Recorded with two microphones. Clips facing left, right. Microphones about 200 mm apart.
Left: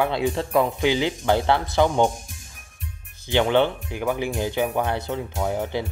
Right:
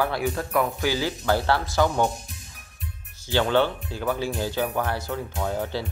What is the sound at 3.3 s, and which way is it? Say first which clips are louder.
Speech: left 2 dB; 20° left (ahead or behind).